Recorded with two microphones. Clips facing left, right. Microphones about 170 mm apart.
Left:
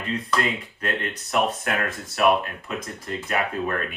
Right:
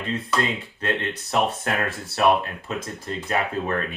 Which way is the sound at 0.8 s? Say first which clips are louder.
Right 5 dB; 30° right (ahead or behind).